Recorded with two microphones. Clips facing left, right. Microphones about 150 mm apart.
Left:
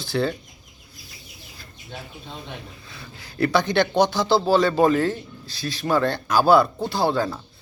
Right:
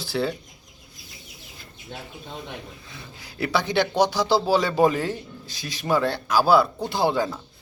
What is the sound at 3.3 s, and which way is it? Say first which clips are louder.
A man's voice: left 3 dB; 5° right (ahead or behind).